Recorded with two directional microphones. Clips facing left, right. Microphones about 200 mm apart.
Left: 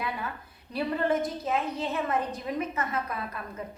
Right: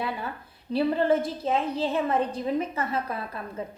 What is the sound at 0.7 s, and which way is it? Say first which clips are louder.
A woman's voice: right 5 dB; 30° right (ahead or behind).